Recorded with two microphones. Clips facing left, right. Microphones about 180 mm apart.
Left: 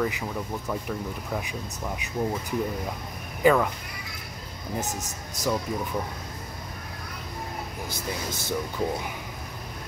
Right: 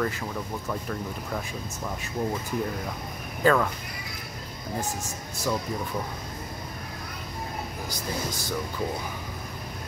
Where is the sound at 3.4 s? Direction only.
15° left (ahead or behind).